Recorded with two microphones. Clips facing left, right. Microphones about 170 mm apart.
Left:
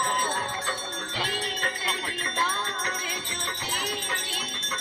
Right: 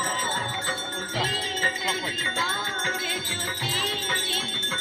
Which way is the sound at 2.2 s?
65° right (ahead or behind).